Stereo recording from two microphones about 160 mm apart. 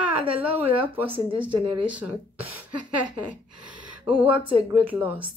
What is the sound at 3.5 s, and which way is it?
Gasp, 30° right (ahead or behind).